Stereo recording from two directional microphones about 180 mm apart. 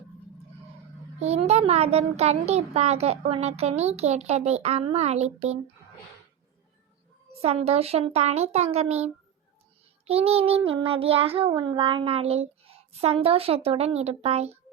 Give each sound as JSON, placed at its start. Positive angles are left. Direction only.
{"t": 1.2, "sound": "a child's voice", "side_deg": -35}
{"t": 7.4, "sound": "a child's voice", "side_deg": -35}
{"t": 10.1, "sound": "a child's voice", "side_deg": -35}